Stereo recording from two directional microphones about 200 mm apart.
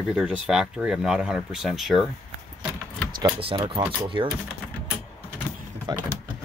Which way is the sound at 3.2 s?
25° right (ahead or behind).